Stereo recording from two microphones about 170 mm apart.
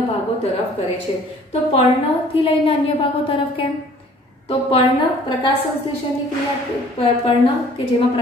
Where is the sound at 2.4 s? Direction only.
35° left (ahead or behind).